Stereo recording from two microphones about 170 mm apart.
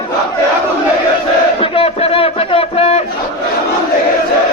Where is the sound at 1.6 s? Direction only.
35° left (ahead or behind).